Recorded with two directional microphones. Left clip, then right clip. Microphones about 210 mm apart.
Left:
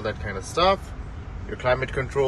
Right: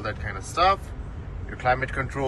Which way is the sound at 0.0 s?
20° left (ahead or behind).